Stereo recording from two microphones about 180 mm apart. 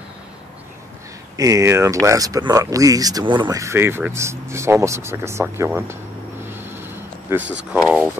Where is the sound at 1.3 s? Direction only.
20° right (ahead or behind).